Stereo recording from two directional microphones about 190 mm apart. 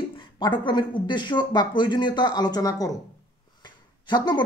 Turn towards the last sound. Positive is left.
turn(degrees=20)  # may be behind; listen again after turning